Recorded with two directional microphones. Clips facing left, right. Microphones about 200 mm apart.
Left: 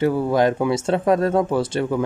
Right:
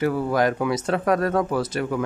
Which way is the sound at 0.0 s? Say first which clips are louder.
Left 3 dB; 25° left (ahead or behind).